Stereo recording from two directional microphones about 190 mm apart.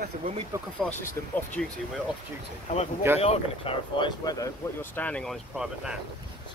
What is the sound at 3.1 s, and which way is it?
Speech, 30° left (ahead or behind).